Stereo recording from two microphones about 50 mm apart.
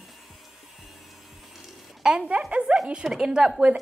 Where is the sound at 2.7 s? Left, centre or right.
Right.